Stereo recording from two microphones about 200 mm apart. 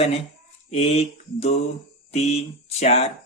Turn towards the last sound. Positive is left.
turn(degrees=30)  # may be behind; listen again after turning